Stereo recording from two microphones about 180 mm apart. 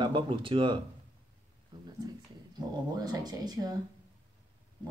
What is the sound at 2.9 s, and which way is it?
Speech, 20° right (ahead or behind).